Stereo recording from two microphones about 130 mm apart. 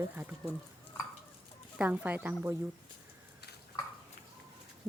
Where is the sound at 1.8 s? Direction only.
10° right (ahead or behind).